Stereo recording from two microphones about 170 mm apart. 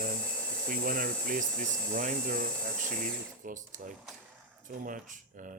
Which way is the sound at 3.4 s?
50° right (ahead or behind).